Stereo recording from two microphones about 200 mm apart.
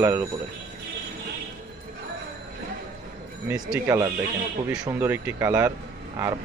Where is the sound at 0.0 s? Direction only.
10° right (ahead or behind).